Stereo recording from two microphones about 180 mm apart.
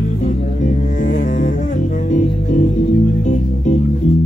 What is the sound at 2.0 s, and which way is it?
Music, 45° left (ahead or behind).